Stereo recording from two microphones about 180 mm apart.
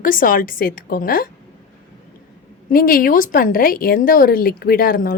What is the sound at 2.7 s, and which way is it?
A woman's voice, 55° left (ahead or behind).